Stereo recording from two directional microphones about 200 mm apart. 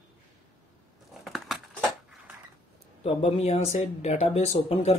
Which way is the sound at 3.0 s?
35° left (ahead or behind).